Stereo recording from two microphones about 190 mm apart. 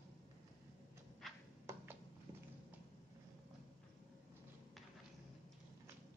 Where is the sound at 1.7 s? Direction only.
15° right (ahead or behind).